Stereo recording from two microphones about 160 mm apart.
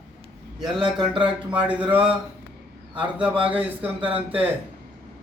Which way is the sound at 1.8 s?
30° right (ahead or behind).